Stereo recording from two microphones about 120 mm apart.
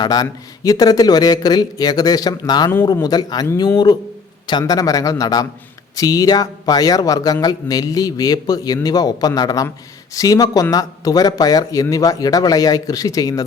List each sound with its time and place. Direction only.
0.0 s speech: 35° left (ahead or behind)
4.4 s speech: 35° left (ahead or behind)